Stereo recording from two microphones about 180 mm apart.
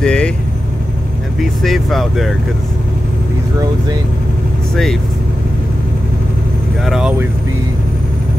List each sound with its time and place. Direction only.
0.0 s vehicle: 5° left (ahead or behind)
1.4 s speech: centre (ahead or behind)
6.8 s speech: centre (ahead or behind)